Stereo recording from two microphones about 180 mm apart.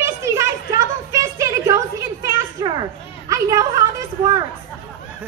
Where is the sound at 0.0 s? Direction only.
15° right (ahead or behind).